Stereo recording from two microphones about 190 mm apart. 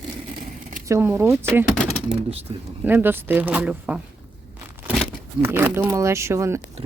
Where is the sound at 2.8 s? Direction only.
10° right (ahead or behind).